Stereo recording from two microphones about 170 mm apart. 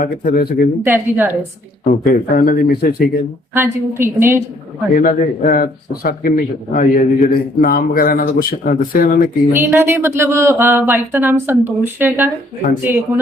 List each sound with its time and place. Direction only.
0.0 s a man's voice: 60° left (ahead or behind)
0.8 s speech: 10° right (ahead or behind)
1.8 s a man's voice: 65° left (ahead or behind)
3.5 s speech: 15° right (ahead or behind)
4.9 s a man's voice: 55° left (ahead or behind)
9.5 s speech: 15° right (ahead or behind)